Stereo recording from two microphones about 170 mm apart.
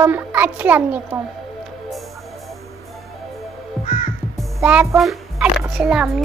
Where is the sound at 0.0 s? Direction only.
10° right (ahead or behind).